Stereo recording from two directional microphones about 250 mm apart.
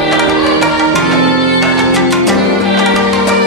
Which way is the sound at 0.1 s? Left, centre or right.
Centre.